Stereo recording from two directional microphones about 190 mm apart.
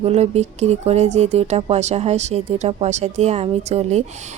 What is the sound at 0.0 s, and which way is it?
A woman's voice, 35° right (ahead or behind).